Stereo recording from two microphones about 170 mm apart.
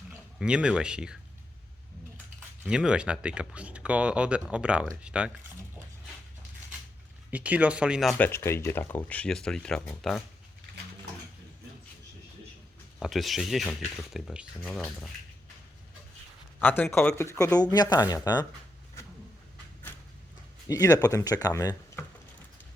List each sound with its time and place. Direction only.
0.3 s speech: 5° right (ahead or behind)
2.6 s speech: 5° right (ahead or behind)
7.3 s speech: 10° right (ahead or behind)
8.2 s speech: 15° left (ahead or behind)
13.0 s speech: centre (ahead or behind)
16.6 s speech: 10° left (ahead or behind)
20.7 s speech: 20° left (ahead or behind)